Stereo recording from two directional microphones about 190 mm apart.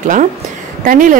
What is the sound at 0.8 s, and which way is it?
Speech, 45° right (ahead or behind).